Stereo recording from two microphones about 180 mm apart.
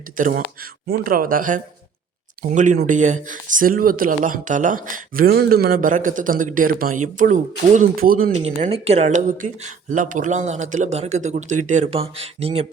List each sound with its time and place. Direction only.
0.2 s speech: 50° right (ahead or behind)
8.4 s speech: 35° right (ahead or behind)